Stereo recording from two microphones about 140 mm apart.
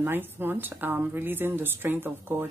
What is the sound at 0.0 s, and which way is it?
Speech, 15° right (ahead or behind).